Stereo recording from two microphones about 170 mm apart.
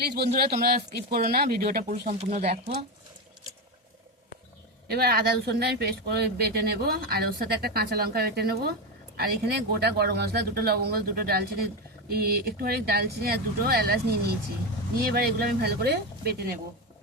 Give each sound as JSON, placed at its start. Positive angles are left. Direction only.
{"t": 0.0, "sound": "speech", "side_deg": -65}
{"t": 2.1, "sound": "speech", "side_deg": -40}
{"t": 4.9, "sound": "speech", "side_deg": -65}